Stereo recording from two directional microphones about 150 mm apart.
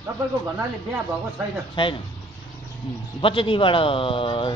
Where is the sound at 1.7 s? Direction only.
35° left (ahead or behind).